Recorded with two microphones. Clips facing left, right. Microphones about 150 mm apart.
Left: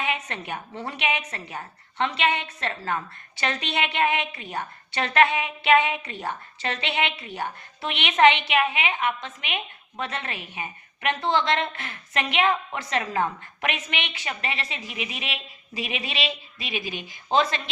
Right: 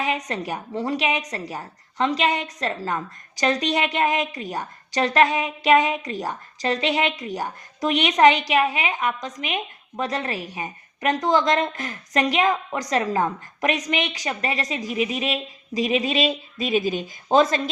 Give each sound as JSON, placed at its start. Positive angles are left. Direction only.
{"t": 0.0, "sound": "a woman's voice", "side_deg": -35}